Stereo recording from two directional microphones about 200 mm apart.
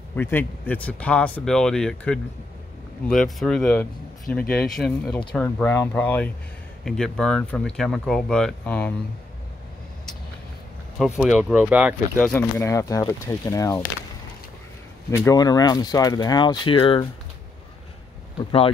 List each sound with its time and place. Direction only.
0.1 s speech: 10° left (ahead or behind)
11.0 s speech: centre (ahead or behind)
12.2 s speech: 10° left (ahead or behind)
15.0 s speech: 15° left (ahead or behind)
18.4 s speech: 30° left (ahead or behind)